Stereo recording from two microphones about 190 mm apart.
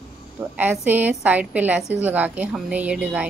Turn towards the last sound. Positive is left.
turn(degrees=-5)  # may be behind; listen again after turning